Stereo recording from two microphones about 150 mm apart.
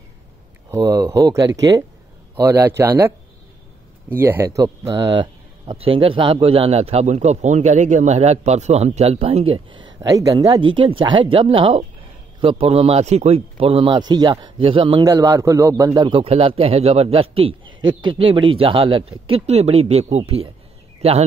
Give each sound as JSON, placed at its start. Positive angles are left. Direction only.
{"t": 0.7, "sound": "speech", "side_deg": -20}
{"t": 4.2, "sound": "speech", "side_deg": -15}
{"t": 4.9, "sound": "a man's voice", "side_deg": -35}
{"t": 15.0, "sound": "a man's voice", "side_deg": -25}